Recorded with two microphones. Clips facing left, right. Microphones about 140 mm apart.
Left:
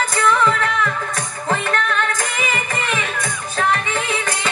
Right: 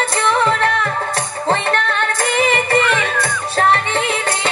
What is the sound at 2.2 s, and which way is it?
Music, 65° right (ahead or behind).